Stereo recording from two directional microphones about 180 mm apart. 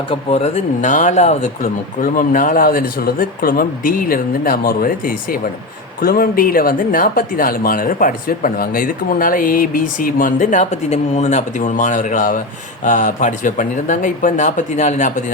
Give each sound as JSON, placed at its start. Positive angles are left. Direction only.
{"t": 0.1, "sound": "speech", "side_deg": 35}
{"t": 2.0, "sound": "speech", "side_deg": 50}